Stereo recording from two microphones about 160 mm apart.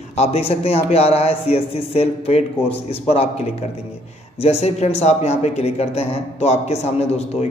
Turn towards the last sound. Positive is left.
turn(degrees=40)  # may be behind; listen again after turning